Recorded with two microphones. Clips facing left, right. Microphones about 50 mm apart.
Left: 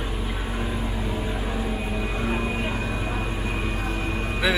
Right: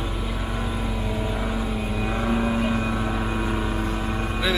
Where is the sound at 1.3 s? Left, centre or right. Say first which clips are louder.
Right 1 dB; centre.